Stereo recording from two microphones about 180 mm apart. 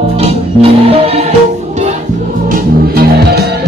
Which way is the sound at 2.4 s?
55° right (ahead or behind).